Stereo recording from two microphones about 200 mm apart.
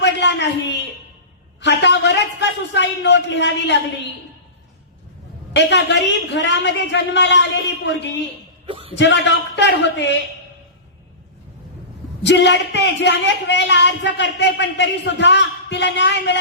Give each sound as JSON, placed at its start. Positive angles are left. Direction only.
{"t": 0.0, "sound": "a sound", "side_deg": 60}
{"t": 1.6, "sound": "speech", "side_deg": 60}
{"t": 5.5, "sound": "speech", "side_deg": 60}
{"t": 8.6, "sound": "a sound", "side_deg": -30}
{"t": 9.0, "sound": "speech", "side_deg": 60}
{"t": 12.2, "sound": "speech", "side_deg": 60}